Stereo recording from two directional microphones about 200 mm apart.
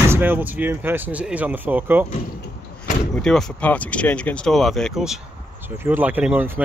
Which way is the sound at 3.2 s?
Centre (ahead or behind).